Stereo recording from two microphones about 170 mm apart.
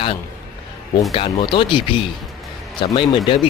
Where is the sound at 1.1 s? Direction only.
30° left (ahead or behind).